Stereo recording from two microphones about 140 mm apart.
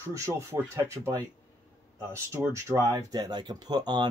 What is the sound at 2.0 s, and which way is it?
Speech, 20° right (ahead or behind).